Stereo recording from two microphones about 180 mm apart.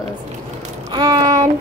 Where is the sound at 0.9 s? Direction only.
25° right (ahead or behind).